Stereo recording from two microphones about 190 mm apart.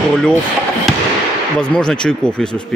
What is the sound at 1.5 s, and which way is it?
Speech, 5° left (ahead or behind).